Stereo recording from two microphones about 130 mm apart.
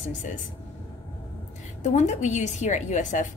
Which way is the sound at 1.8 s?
65° left (ahead or behind).